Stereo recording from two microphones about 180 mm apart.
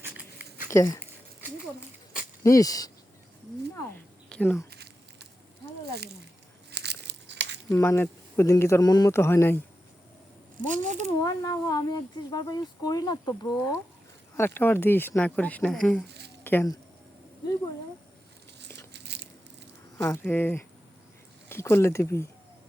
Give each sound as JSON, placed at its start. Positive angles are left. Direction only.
{"t": 0.0, "sound": "a sound", "side_deg": -10}
{"t": 0.7, "sound": "speech", "side_deg": 15}
{"t": 2.4, "sound": "speech", "side_deg": 20}
{"t": 3.9, "sound": "a sound", "side_deg": 10}
{"t": 5.8, "sound": "a sound", "side_deg": -65}
{"t": 6.7, "sound": "crumpling", "side_deg": -65}
{"t": 7.7, "sound": "speech", "side_deg": 15}
{"t": 10.6, "sound": "speech", "side_deg": -45}
{"t": 11.2, "sound": "speech", "side_deg": 20}
{"t": 16.0, "sound": "a sound", "side_deg": -65}
{"t": 16.4, "sound": "speech", "side_deg": 10}
{"t": 18.9, "sound": "biting", "side_deg": -70}
{"t": 20.0, "sound": "speech", "side_deg": 10}